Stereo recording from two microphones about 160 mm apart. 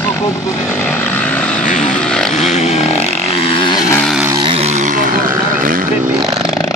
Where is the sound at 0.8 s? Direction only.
10° left (ahead or behind).